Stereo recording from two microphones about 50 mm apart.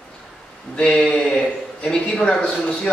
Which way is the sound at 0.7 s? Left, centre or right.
Centre.